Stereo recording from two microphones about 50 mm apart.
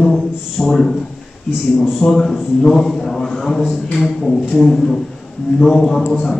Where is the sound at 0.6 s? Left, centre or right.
Centre.